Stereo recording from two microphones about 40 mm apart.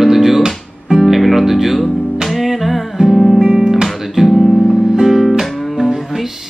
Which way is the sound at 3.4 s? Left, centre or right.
Centre.